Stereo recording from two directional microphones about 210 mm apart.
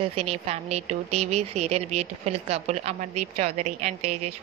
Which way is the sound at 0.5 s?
30° right (ahead or behind).